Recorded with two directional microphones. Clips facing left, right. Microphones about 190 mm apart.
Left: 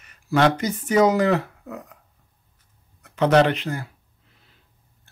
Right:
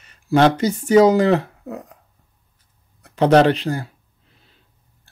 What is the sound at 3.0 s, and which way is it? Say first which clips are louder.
Speech: right 4 dB; 35° right (ahead or behind).